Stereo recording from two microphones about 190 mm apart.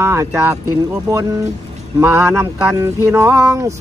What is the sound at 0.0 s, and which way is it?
Speech, 15° right (ahead or behind).